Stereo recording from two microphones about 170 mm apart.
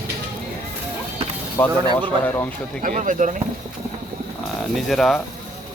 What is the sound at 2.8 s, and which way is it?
Speech, 50° right (ahead or behind).